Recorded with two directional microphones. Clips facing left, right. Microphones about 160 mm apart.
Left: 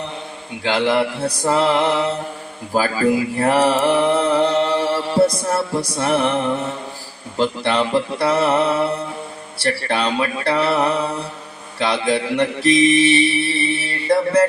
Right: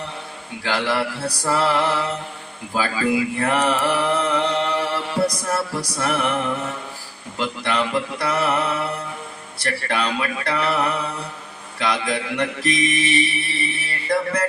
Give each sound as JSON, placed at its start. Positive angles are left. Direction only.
{"t": 0.6, "sound": "mantra", "side_deg": 20}
{"t": 2.7, "sound": "music", "side_deg": 40}
{"t": 7.3, "sound": "mantra", "side_deg": 30}
{"t": 9.6, "sound": "speech", "side_deg": 30}
{"t": 11.8, "sound": "mantra", "side_deg": 30}